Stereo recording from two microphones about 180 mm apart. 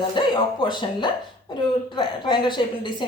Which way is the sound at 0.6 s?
25° left (ahead or behind).